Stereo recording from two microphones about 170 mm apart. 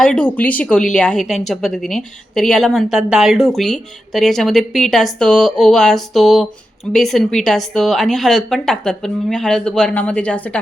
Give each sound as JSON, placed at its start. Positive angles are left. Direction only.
{"t": 0.0, "sound": "speech", "side_deg": 5}